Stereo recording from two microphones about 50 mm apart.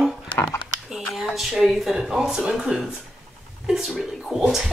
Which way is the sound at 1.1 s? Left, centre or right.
Centre.